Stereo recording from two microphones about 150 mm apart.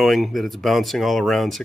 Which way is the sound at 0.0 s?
Centre (ahead or behind).